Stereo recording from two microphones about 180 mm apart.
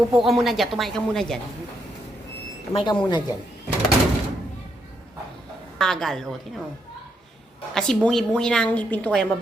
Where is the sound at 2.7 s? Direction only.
25° left (ahead or behind).